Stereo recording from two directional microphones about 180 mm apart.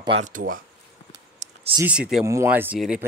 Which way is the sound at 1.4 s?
35° right (ahead or behind).